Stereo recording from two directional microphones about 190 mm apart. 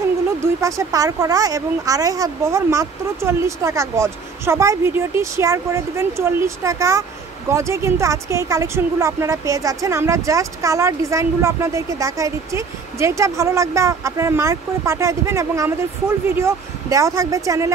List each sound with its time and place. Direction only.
0.4 s speech: 15° right (ahead or behind)